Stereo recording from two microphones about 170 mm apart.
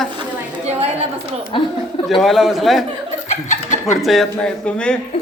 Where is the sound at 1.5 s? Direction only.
30° left (ahead or behind).